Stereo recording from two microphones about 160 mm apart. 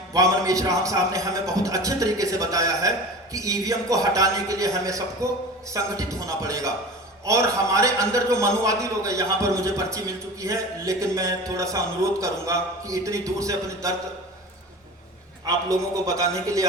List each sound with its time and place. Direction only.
0.1 s speech: 20° right (ahead or behind)
15.4 s speech: 20° right (ahead or behind)